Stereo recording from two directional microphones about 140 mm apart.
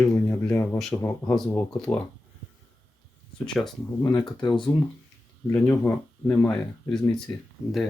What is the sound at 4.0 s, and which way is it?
Speech, 30° left (ahead or behind).